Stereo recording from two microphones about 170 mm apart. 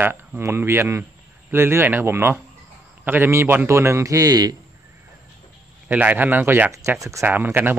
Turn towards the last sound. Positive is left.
turn(degrees=-10)  # may be behind; listen again after turning